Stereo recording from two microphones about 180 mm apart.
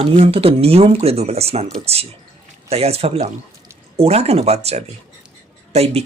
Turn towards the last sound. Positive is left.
turn(degrees=-35)  # may be behind; listen again after turning